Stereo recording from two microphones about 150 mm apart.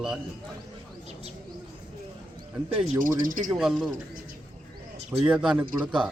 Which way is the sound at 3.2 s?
65° right (ahead or behind).